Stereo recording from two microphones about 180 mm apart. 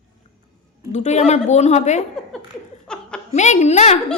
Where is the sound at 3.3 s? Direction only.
40° left (ahead or behind).